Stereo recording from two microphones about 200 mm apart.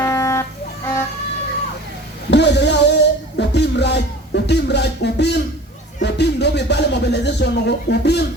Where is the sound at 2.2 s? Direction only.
60° left (ahead or behind).